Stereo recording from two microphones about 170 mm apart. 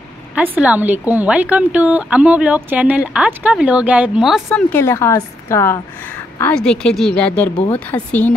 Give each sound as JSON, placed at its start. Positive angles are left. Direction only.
{"t": 0.3, "sound": "speech", "side_deg": -10}
{"t": 4.5, "sound": "a woman's voice", "side_deg": 15}
{"t": 7.5, "sound": "speech", "side_deg": 20}
{"t": 7.8, "sound": "a woman's voice", "side_deg": 10}